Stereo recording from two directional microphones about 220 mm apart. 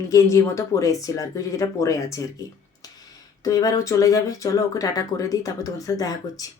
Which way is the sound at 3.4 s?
15° left (ahead or behind).